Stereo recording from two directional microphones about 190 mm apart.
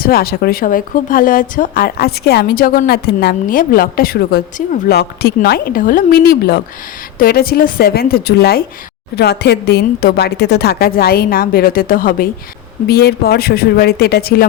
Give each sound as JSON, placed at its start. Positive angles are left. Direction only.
{"t": 0.0, "sound": "a woman's voice", "side_deg": 50}